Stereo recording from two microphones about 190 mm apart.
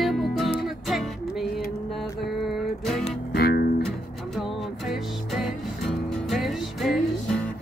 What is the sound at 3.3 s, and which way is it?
Music, 55° left (ahead or behind).